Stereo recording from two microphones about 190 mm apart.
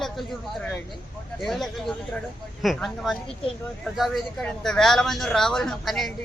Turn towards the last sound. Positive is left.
turn(degrees=0)  # may be behind; listen again after turning